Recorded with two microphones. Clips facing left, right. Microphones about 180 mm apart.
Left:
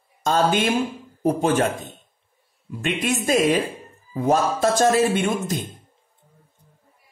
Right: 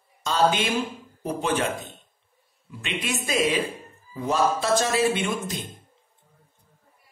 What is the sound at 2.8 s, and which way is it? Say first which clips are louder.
Speech: left 6 dB; 45° left (ahead or behind).